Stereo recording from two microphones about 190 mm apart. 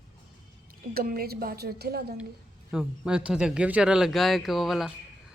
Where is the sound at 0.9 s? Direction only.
50° right (ahead or behind).